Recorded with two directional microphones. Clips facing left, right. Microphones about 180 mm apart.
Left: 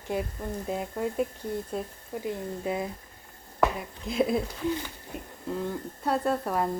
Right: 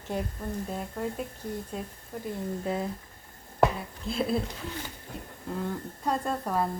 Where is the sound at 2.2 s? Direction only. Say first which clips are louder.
Even; 10° left (ahead or behind).